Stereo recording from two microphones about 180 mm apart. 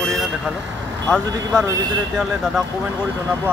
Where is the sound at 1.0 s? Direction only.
5° left (ahead or behind).